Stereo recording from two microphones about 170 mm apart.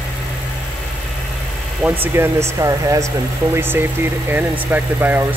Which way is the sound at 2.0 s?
15° right (ahead or behind).